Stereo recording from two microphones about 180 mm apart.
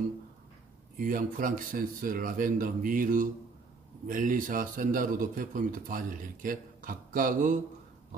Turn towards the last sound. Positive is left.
turn(degrees=-50)  # may be behind; listen again after turning